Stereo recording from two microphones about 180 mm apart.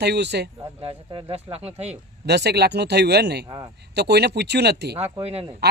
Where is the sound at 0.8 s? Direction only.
35° right (ahead or behind).